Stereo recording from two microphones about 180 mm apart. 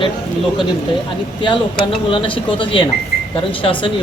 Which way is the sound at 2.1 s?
30° left (ahead or behind).